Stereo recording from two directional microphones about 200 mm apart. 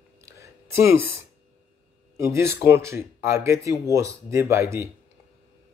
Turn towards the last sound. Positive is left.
turn(degrees=-15)  # may be behind; listen again after turning